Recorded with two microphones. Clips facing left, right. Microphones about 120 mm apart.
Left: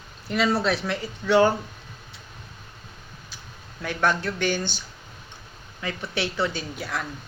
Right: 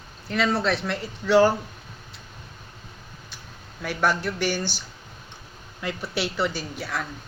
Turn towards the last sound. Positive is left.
turn(degrees=0)  # may be behind; listen again after turning